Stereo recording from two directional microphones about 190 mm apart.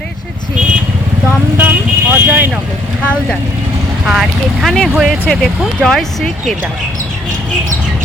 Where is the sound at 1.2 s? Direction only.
10° right (ahead or behind).